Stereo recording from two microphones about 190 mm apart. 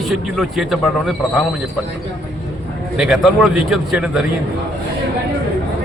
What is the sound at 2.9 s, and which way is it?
A man's voice, 5° right (ahead or behind).